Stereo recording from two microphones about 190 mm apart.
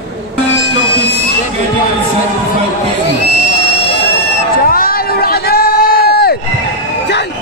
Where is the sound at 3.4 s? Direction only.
65° left (ahead or behind).